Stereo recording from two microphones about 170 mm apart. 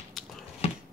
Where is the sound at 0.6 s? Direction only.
35° left (ahead or behind).